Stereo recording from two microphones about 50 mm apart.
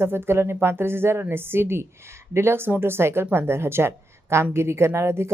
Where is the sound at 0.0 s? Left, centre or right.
Right.